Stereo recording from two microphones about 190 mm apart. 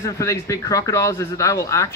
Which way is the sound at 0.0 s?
15° left (ahead or behind).